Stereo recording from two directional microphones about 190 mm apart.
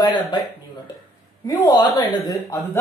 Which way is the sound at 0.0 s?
20° left (ahead or behind).